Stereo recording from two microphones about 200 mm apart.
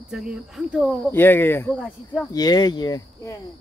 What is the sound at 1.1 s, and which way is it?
Speech, 10° left (ahead or behind).